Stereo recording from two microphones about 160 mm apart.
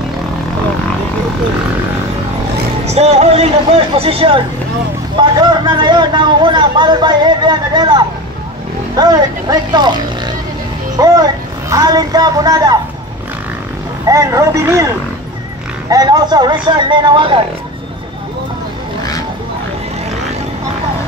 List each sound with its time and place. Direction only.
2.9 s speech: 40° right (ahead or behind)
11.7 s speech: 25° right (ahead or behind)
14.0 s speech: 20° right (ahead or behind)
15.9 s speech: 25° right (ahead or behind)